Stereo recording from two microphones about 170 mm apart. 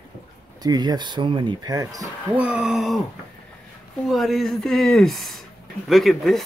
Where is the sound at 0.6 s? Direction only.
25° right (ahead or behind).